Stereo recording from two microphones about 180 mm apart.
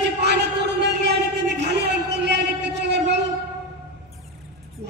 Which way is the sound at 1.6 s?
70° right (ahead or behind).